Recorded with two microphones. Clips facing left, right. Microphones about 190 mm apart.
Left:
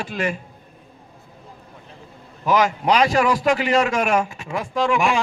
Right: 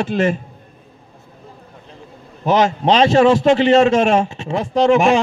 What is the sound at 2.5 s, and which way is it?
A man's voice, 25° right (ahead or behind).